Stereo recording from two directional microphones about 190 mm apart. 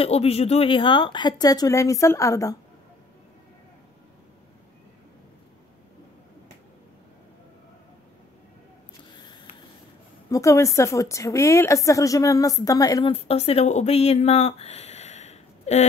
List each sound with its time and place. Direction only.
0.0 s a woman's voice: 30° left (ahead or behind); by 2.5 s 15° left (ahead or behind)
10.3 s a woman's voice: 15° left (ahead or behind)
13.1 s speech: 30° left (ahead or behind)